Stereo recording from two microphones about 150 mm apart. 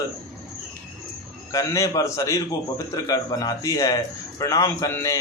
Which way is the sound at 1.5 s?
20° left (ahead or behind).